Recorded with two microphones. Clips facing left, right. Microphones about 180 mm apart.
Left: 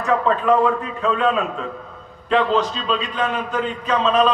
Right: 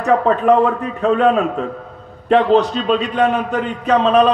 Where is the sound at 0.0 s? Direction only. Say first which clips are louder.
Right 5 dB; 40° right (ahead or behind).